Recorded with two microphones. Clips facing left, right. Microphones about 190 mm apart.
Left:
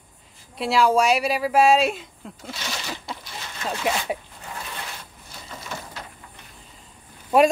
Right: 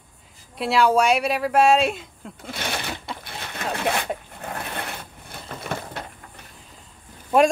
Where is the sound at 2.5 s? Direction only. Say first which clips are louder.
Right 4 dB; 55° right (ahead or behind).